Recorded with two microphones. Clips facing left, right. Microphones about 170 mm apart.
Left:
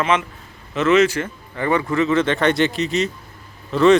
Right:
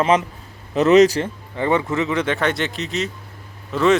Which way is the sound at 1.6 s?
20° right (ahead or behind).